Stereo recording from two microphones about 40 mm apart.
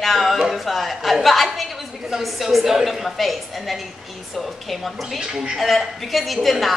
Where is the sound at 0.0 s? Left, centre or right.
Centre.